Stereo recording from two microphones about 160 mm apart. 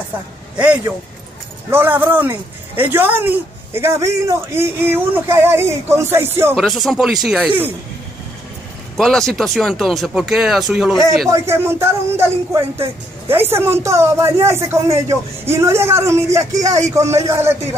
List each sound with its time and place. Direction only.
0.6 s speech: 10° right (ahead or behind)
6.5 s speech: centre (ahead or behind)
8.9 s speech: 5° left (ahead or behind)
11.2 s speech: 20° right (ahead or behind)